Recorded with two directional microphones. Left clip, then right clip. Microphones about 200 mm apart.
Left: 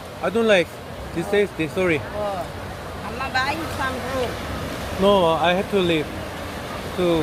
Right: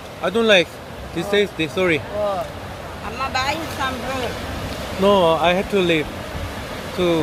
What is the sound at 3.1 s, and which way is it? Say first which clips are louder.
Vehicle: right 1 dB; 40° right (ahead or behind).